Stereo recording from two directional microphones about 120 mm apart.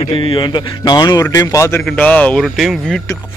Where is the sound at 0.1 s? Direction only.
45° left (ahead or behind); by 1.8 s 25° left (ahead or behind).